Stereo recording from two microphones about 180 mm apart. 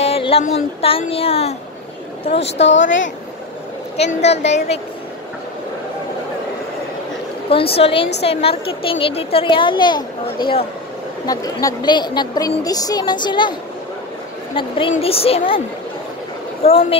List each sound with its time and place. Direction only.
0.0 s a sound: 35° left (ahead or behind)
2.6 s speech: 90° left
3.9 s a woman's voice: 35° left (ahead or behind)
7.4 s a woman's voice: 30° left (ahead or behind)
11.2 s a woman's voice: 20° left (ahead or behind)
16.6 s a woman's voice: 35° left (ahead or behind)